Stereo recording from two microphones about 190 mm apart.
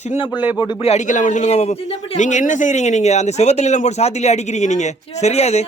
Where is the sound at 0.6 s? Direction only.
25° left (ahead or behind).